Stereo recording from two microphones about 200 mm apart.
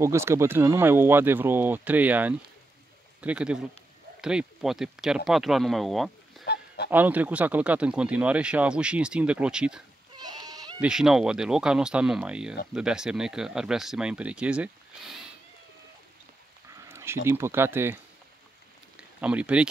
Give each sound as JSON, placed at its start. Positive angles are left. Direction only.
{"t": 0.0, "sound": "speech", "side_deg": -15}
{"t": 6.4, "sound": "honk", "side_deg": 55}
{"t": 6.9, "sound": "speech", "side_deg": -10}
{"t": 10.1, "sound": "a sound", "side_deg": -20}
{"t": 10.8, "sound": "speech", "side_deg": -5}
{"t": 16.9, "sound": "speech", "side_deg": -10}